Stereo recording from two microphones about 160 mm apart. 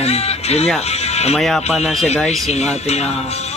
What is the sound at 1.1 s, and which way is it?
Music, 40° left (ahead or behind).